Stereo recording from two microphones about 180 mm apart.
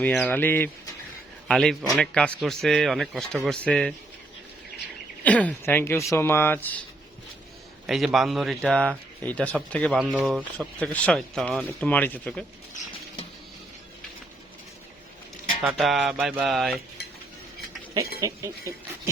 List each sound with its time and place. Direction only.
0.0 s a man's voice: 10° left (ahead or behind)
5.2 s speech: 10° left (ahead or behind)
7.9 s speech: centre (ahead or behind)
15.8 s speech: centre (ahead or behind)
18.2 s speech: 15° right (ahead or behind)